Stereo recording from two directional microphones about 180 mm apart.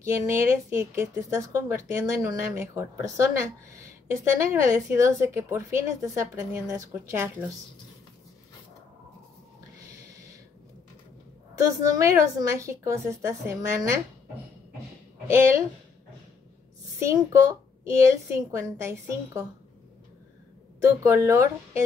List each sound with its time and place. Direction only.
0.0 s a woman's voice: 15° right (ahead or behind)
11.6 s a woman's voice: 15° right (ahead or behind)
15.2 s a woman's voice: 15° right (ahead or behind)
17.0 s a woman's voice: 15° right (ahead or behind)
20.8 s a woman's voice: 15° right (ahead or behind)